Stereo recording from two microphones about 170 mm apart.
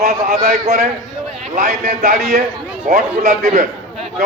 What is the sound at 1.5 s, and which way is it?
A man's voice, 45° right (ahead or behind).